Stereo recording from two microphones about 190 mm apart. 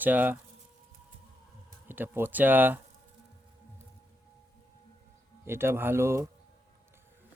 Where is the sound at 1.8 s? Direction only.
10° right (ahead or behind).